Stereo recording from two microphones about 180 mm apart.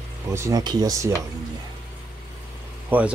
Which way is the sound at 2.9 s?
10° right (ahead or behind).